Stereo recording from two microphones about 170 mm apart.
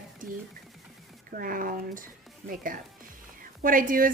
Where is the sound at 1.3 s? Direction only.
55° right (ahead or behind).